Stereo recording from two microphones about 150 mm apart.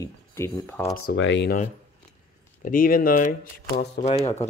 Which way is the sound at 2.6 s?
65° left (ahead or behind).